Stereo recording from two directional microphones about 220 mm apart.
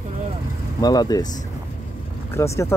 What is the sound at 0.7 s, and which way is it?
Speech, 15° left (ahead or behind).